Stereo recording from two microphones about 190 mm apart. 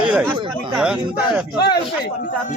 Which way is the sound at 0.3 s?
25° right (ahead or behind).